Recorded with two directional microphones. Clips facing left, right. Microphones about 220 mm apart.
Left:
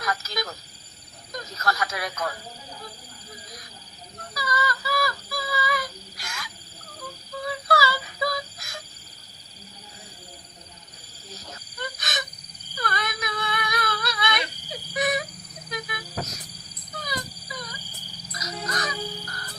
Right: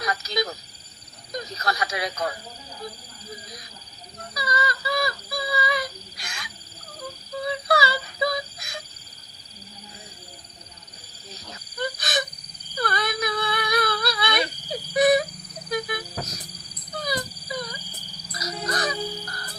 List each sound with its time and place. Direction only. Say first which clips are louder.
0.0 s speech: right 3 dB; 15° right (ahead or behind)
1.5 s speech: even; 15° right (ahead or behind)
4.4 s synthetic singing: right 1 dB; 20° right (ahead or behind)
7.7 s wail: even; 20° right (ahead or behind)
11.8 s a sound: right 7 dB; 35° right (ahead or behind)
12.7 s whimper: right 4 dB; 35° right (ahead or behind)
15.7 s wild animals: right 5 dB; 35° right (ahead or behind)
16.9 s wail: right 5 dB; 35° right (ahead or behind)
18.3 s crow: right 3 dB; 35° right (ahead or behind)